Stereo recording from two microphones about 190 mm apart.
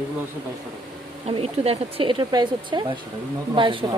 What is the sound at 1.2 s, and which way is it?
Speech, 30° right (ahead or behind).